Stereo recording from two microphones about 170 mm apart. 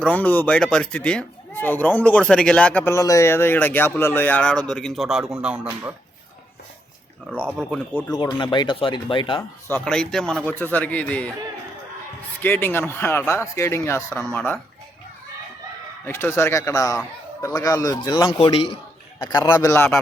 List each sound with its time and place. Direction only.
0.0 s a man's voice: 10° left (ahead or behind); by 5.9 s 10° right (ahead or behind)
7.3 s a man's voice: 5° left (ahead or behind)
8.2 s a man's voice: 25° left (ahead or behind)
9.4 s a man's voice: 10° left (ahead or behind)
12.4 s a man's voice: 10° left (ahead or behind)
16.0 s a man's voice: 15° left (ahead or behind); by 18.8 s 30° left (ahead or behind)
19.3 s a man's voice: 20° left (ahead or behind)